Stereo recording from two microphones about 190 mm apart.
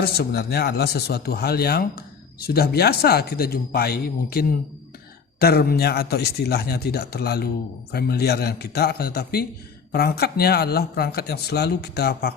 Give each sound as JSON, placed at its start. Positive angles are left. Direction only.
{"t": 0.0, "sound": "speech", "side_deg": 55}